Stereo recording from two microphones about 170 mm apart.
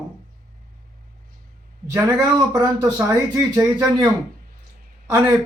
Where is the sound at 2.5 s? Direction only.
20° right (ahead or behind).